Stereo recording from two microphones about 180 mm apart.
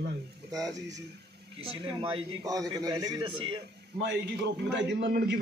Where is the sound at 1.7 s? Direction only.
30° right (ahead or behind).